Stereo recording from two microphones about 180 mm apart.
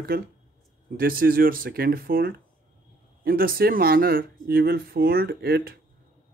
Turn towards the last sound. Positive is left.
turn(degrees=-60)  # may be behind; listen again after turning